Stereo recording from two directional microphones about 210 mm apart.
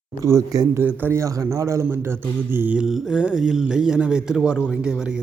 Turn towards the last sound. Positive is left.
turn(degrees=-5)  # may be behind; listen again after turning